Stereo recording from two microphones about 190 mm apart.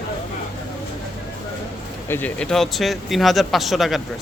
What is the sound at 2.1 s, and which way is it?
Speech, 5° left (ahead or behind).